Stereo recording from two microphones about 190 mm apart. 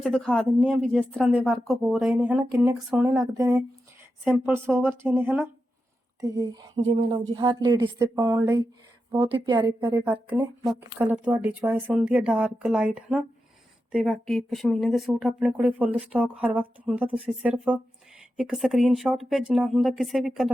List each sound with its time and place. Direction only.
0.0 s speech: 5° left (ahead or behind); by 9.7 s 25° right (ahead or behind)
9.8 s speech: 10° right (ahead or behind)